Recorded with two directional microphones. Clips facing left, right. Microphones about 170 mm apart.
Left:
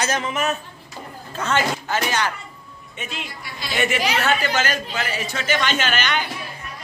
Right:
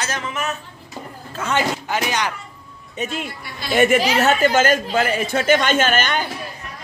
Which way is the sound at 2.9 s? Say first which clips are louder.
Right 7 dB; 45° right (ahead or behind).